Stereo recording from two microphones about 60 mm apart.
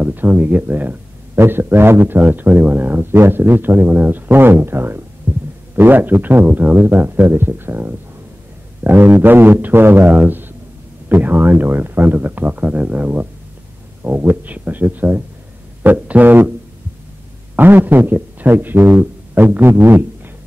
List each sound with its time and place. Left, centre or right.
0.0 s a man's voice: right
17.6 s a man's voice: right